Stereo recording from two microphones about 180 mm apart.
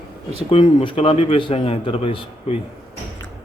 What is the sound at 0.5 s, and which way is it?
A man's voice, 30° left (ahead or behind).